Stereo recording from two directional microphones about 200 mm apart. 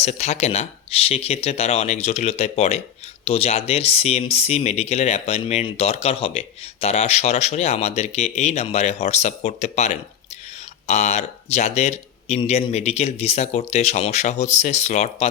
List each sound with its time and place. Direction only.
0.0 s speech: 35° left (ahead or behind)